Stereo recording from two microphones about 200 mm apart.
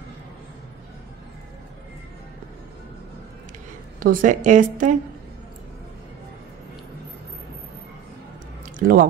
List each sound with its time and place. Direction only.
4.0 s a woman's voice: 40° right (ahead or behind)
8.7 s chewing: 45° right (ahead or behind)